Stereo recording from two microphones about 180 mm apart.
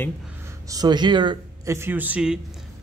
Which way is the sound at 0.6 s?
20° right (ahead or behind).